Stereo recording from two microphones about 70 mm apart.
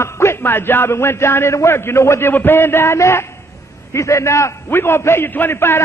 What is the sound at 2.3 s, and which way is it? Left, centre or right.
A man's voice, left.